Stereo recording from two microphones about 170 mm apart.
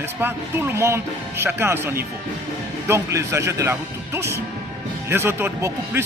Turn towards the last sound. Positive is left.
turn(degrees=-15)  # may be behind; listen again after turning